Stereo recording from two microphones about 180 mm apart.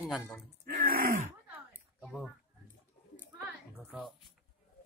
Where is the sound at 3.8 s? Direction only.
Centre (ahead or behind).